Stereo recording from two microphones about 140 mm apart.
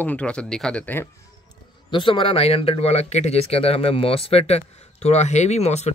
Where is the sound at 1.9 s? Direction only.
40° left (ahead or behind).